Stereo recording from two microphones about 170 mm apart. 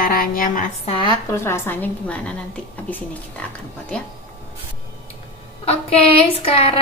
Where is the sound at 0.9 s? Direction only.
30° left (ahead or behind).